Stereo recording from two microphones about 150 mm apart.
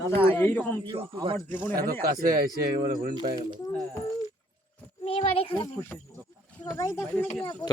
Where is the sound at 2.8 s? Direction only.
70° right (ahead or behind).